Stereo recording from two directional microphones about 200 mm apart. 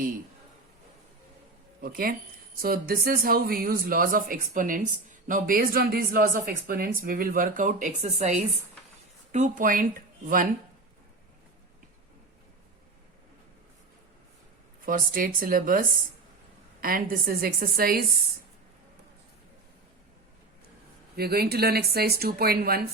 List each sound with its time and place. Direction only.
1.8 s speech: 45° right (ahead or behind)
14.8 s speech: 45° right (ahead or behind)
21.2 s speech: 50° right (ahead or behind)